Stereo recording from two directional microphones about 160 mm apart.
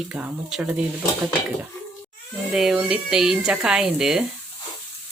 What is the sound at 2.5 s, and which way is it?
Speech, 5° right (ahead or behind).